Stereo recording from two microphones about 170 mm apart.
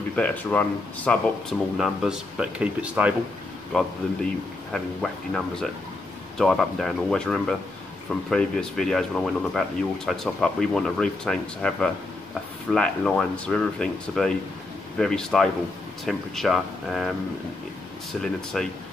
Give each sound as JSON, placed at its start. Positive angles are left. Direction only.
{"t": 0.1, "sound": "speech", "side_deg": 10}
{"t": 18.2, "sound": "speech", "side_deg": 5}